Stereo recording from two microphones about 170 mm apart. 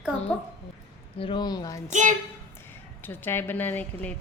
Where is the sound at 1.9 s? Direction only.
45° right (ahead or behind).